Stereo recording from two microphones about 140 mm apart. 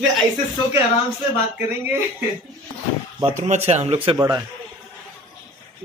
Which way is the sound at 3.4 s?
55° right (ahead or behind).